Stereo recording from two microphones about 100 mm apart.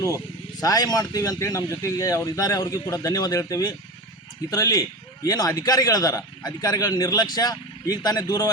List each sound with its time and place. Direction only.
0.6 s a man's voice: 40° left (ahead or behind)